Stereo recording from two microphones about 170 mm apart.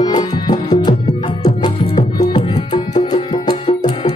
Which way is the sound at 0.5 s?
25° left (ahead or behind).